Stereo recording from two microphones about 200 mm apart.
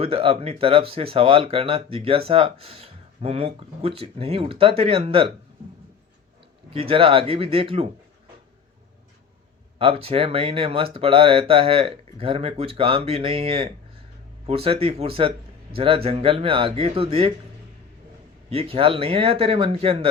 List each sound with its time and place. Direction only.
0.0 s speech: 30° right (ahead or behind)
6.7 s speech: 25° right (ahead or behind)
9.7 s speech: 30° right (ahead or behind)
18.5 s speech: 25° right (ahead or behind)